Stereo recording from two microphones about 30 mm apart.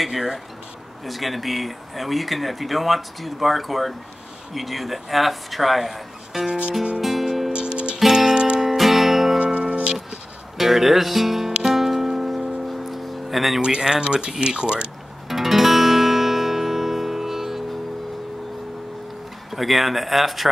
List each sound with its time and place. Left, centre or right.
0.1 s speech: centre
1.0 s speech: centre
6.3 s music: centre
7.0 s music: centre
7.5 s music: right
8.1 s music: centre
8.5 s music: centre
9.4 s music: right
10.6 s speech: centre
11.7 s music: centre
13.6 s speech: right
15.2 s guitar: centre
19.5 s speech: centre